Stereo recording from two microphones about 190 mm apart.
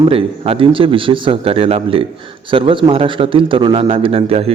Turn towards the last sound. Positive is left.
turn(degrees=-30)  # may be behind; listen again after turning